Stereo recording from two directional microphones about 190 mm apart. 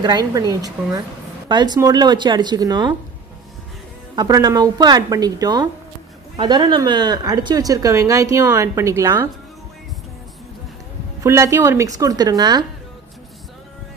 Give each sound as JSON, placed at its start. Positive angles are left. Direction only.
{"t": 0.0, "sound": "speech", "side_deg": -20}
{"t": 4.1, "sound": "speech", "side_deg": -20}
{"t": 11.2, "sound": "speech", "side_deg": -15}